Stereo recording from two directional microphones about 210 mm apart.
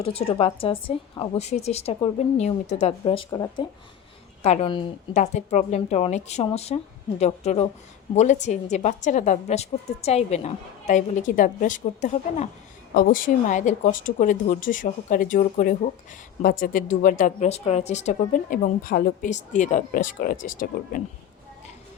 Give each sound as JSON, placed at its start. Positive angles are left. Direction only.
{"t": 0.0, "sound": "a woman's voice", "side_deg": 30}